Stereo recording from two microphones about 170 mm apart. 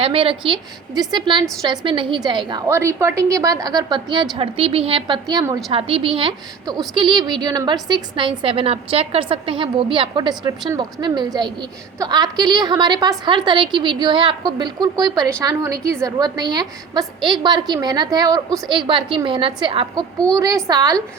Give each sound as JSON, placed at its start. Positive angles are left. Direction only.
{"t": 0.0, "sound": "a woman's voice", "side_deg": -35}